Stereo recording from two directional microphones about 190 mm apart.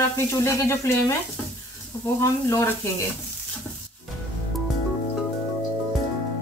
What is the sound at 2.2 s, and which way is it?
Speech, 15° left (ahead or behind).